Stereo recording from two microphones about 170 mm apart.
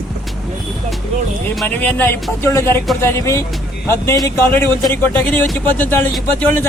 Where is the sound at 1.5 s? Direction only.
5° left (ahead or behind).